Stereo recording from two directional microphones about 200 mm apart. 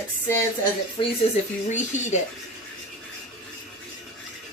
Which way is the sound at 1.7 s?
35° left (ahead or behind).